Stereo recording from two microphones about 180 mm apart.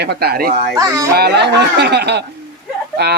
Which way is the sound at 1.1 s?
65° right (ahead or behind).